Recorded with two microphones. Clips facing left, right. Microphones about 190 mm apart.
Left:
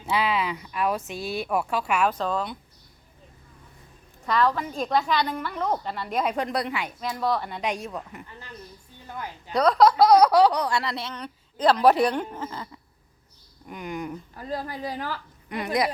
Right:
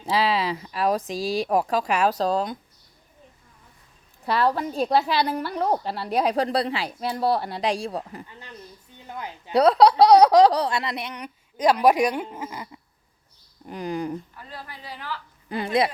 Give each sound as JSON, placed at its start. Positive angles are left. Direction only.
{"t": 0.0, "sound": "speech", "side_deg": -35}
{"t": 4.3, "sound": "speech", "side_deg": -30}
{"t": 9.0, "sound": "a sound", "side_deg": -20}
{"t": 9.5, "sound": "a woman's voice", "side_deg": -35}
{"t": 13.7, "sound": "speech", "side_deg": -35}
{"t": 14.3, "sound": "a woman's voice", "side_deg": 40}
{"t": 15.4, "sound": "speech", "side_deg": -30}